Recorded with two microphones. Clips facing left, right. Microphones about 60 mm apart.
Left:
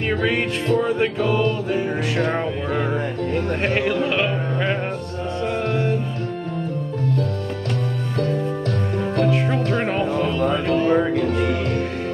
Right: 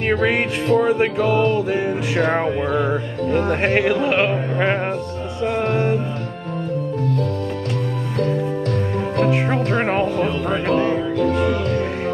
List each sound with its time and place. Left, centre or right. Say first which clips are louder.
0.1 s music: right 3 dB; right
3.6 s music: right 1 dB; right
9.3 s music: right 2 dB; right